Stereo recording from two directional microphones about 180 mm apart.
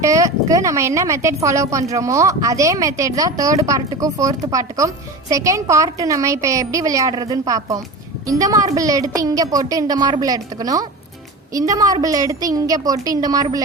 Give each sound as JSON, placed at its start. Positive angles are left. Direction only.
{"t": 0.0, "sound": "a woman's voice", "side_deg": -20}